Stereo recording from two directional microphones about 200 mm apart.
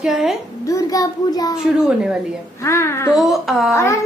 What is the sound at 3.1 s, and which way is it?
Speech, centre (ahead or behind).